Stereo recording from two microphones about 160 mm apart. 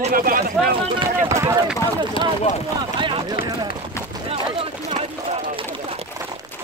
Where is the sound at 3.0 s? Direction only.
30° right (ahead or behind).